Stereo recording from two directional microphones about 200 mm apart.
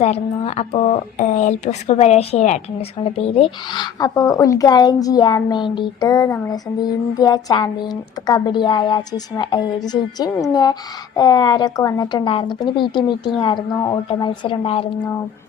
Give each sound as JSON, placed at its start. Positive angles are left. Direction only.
{"t": 0.0, "sound": "speech", "side_deg": 30}